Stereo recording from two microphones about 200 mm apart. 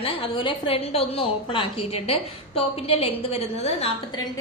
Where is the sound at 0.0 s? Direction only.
25° left (ahead or behind).